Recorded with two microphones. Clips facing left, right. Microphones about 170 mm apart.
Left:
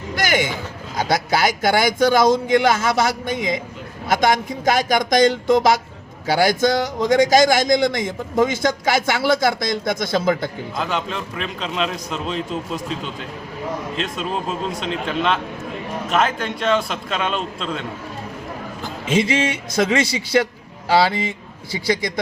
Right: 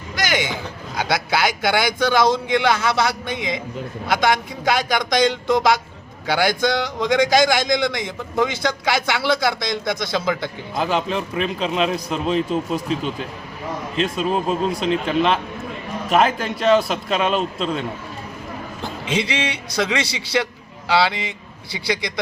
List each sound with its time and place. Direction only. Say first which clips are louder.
0.2 s a sound: left 2 dB; 50° left (ahead or behind)
0.9 s a man's voice: left 2 dB; 45° left (ahead or behind)
10.8 s a man's voice: right 4 dB; 5° right (ahead or behind)
13.9 s a man's voice: right 9 dB; centre (ahead or behind)
19.0 s a man's voice: left 5 dB; 45° left (ahead or behind)